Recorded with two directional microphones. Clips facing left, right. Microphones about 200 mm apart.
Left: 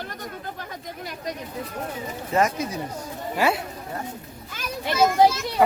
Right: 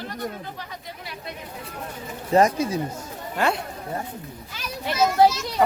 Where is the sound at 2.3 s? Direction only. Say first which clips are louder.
Right 4 dB; 30° right (ahead or behind).